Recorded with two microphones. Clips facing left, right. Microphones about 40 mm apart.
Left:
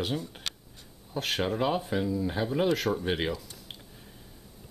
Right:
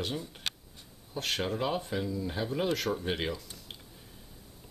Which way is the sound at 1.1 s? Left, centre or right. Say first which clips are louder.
Left 3 dB; centre.